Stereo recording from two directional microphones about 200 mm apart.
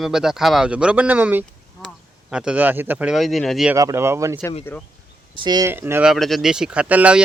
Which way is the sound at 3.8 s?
15° right (ahead or behind).